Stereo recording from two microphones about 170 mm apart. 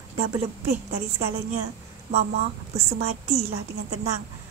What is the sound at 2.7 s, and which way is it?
Speech, 40° right (ahead or behind).